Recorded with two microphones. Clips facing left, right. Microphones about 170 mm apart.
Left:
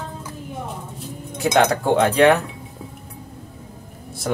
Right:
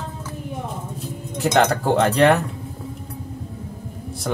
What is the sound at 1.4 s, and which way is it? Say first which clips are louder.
Speech: left 1 dB; 10° left (ahead or behind).